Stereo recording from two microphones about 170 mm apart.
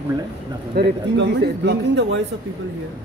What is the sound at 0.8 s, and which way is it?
Speech, 80° right.